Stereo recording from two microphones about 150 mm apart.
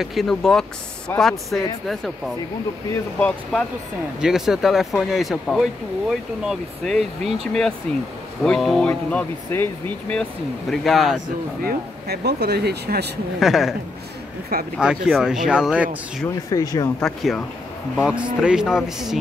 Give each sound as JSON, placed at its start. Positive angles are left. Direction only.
{"t": 0.0, "sound": "speech", "side_deg": 0}
{"t": 4.2, "sound": "speech", "side_deg": -5}
{"t": 8.5, "sound": "speech", "side_deg": 0}
{"t": 8.8, "sound": "speech", "side_deg": 15}
{"t": 10.7, "sound": "speech", "side_deg": 0}
{"t": 11.6, "sound": "speech", "side_deg": -90}
{"t": 13.4, "sound": "speech", "side_deg": 0}
{"t": 14.8, "sound": "speech", "side_deg": -5}
{"t": 16.4, "sound": "speech", "side_deg": 25}
{"t": 17.0, "sound": "speech", "side_deg": 0}